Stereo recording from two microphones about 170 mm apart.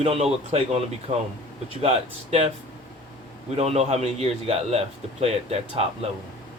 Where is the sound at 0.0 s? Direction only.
35° right (ahead or behind).